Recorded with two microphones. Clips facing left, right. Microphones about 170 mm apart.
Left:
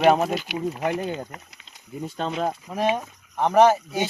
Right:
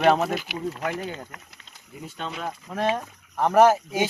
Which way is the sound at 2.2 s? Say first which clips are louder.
Left 6 dB; 40° left (ahead or behind).